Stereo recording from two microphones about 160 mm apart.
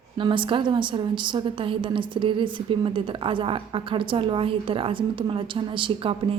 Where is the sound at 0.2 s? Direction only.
30° right (ahead or behind).